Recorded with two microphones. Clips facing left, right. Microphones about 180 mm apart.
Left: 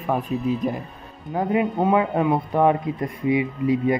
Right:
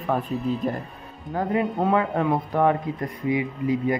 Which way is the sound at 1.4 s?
15° left (ahead or behind).